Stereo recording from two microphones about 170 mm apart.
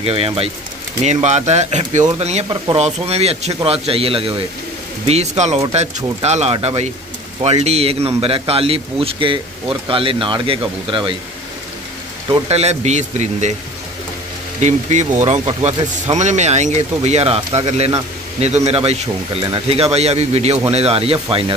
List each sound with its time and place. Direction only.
0.0 s a man's voice: 35° right (ahead or behind)
12.3 s a man's voice: 40° right (ahead or behind)
14.6 s a man's voice: 45° right (ahead or behind)